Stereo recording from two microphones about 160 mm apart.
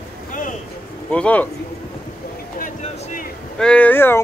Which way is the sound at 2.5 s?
55° left (ahead or behind).